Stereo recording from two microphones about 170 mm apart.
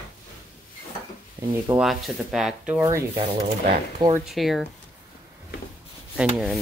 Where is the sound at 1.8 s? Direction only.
Centre (ahead or behind).